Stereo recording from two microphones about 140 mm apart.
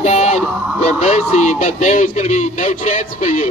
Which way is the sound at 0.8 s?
55° left (ahead or behind).